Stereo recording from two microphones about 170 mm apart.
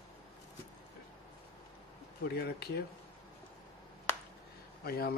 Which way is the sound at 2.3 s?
70° left (ahead or behind).